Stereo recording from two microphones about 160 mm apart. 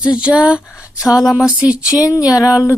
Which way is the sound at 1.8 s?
20° left (ahead or behind).